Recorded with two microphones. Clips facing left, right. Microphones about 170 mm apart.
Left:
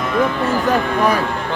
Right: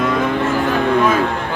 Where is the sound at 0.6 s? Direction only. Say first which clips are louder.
Right 1 dB; 40° left (ahead or behind).